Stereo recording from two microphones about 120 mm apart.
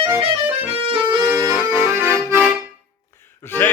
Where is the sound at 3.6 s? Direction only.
20° left (ahead or behind).